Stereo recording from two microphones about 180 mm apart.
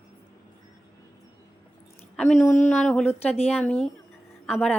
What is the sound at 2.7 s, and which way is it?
Speech, centre (ahead or behind).